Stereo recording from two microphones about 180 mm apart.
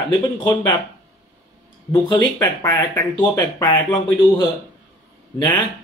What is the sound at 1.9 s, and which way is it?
Speech, 20° left (ahead or behind).